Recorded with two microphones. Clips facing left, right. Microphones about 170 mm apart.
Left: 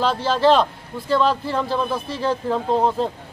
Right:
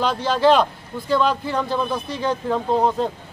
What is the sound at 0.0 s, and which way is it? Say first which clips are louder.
A man's voice: even; centre (ahead or behind).